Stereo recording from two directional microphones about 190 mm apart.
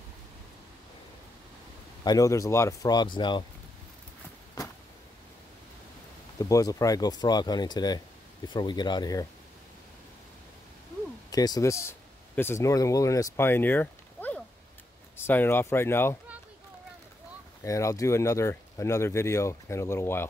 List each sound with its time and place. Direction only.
2.0 s speech: 15° left (ahead or behind)
6.3 s speech: 15° left (ahead or behind)
11.2 s speech: 20° left (ahead or behind)
17.6 s speech: 15° left (ahead or behind)